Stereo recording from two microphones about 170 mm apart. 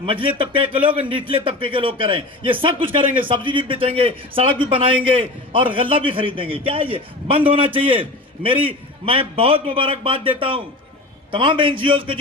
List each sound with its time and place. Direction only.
0.0 s a man's voice: 30° right (ahead or behind)